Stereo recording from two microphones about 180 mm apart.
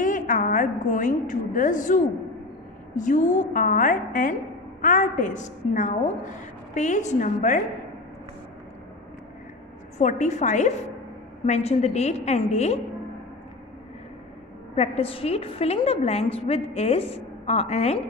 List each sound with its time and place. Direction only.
0.0 s a woman's voice: 45° left (ahead or behind)
9.9 s a woman's voice: 40° left (ahead or behind)
14.8 s a woman's voice: 30° left (ahead or behind)